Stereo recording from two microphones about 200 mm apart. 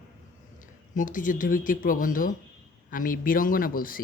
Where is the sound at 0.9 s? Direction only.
40° left (ahead or behind).